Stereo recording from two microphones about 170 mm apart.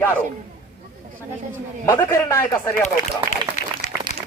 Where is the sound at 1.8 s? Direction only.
15° left (ahead or behind).